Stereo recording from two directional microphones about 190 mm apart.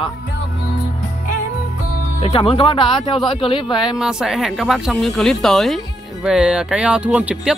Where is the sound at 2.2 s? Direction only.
30° left (ahead or behind).